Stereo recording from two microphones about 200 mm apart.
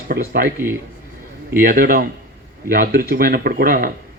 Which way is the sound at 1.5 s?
45° right (ahead or behind).